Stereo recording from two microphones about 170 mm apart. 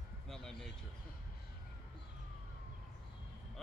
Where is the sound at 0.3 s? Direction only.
5° left (ahead or behind).